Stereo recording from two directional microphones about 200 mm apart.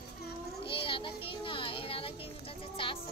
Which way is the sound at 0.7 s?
25° left (ahead or behind).